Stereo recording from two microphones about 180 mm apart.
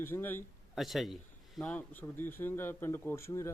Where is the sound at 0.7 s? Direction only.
Centre (ahead or behind).